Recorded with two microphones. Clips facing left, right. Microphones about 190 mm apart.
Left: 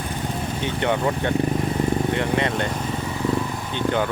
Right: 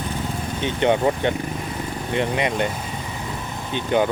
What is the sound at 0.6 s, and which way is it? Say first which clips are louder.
Speech: right 4 dB; 20° right (ahead or behind).